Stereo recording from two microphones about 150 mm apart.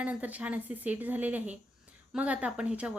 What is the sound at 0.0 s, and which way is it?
A woman's voice, 10° right (ahead or behind).